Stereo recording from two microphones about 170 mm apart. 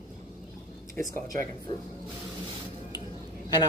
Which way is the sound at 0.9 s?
15° left (ahead or behind).